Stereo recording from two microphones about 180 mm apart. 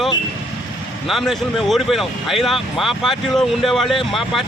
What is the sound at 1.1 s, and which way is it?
Speech, centre (ahead or behind).